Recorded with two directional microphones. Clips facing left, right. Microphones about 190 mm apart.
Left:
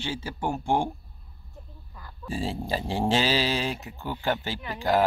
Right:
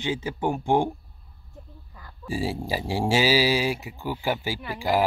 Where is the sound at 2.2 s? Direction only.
15° right (ahead or behind).